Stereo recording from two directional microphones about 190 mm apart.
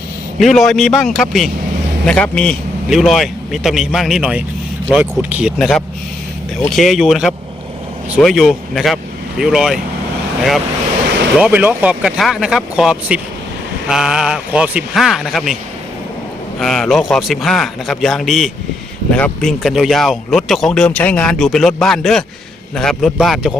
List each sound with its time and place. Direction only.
0.3 s speech: centre (ahead or behind)
11.3 s speech: 5° right (ahead or behind)
16.6 s speech: centre (ahead or behind)